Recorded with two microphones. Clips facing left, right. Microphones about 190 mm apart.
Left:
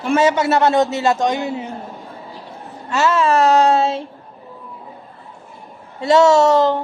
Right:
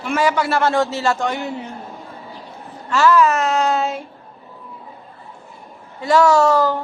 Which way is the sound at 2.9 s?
25° left (ahead or behind).